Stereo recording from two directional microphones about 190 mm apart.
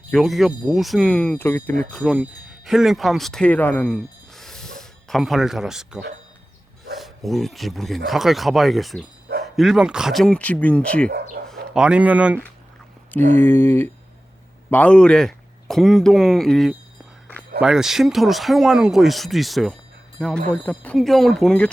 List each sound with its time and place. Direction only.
0.1 s speech: centre (ahead or behind)
3.9 s a sound: centre (ahead or behind)
6.9 s speech: centre (ahead or behind)
11.1 s chicken: 50° right (ahead or behind)
11.4 s speech: 5° right (ahead or behind)
13.3 s speech: 10° left (ahead or behind)